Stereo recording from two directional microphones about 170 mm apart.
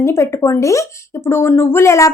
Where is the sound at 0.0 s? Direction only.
15° left (ahead or behind).